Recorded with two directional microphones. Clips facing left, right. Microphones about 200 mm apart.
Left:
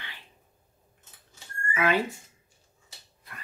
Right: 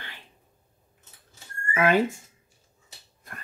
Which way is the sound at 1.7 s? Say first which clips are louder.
Right 4 dB; 45° right (ahead or behind).